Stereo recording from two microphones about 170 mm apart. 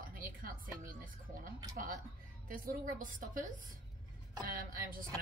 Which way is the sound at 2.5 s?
55° right (ahead or behind).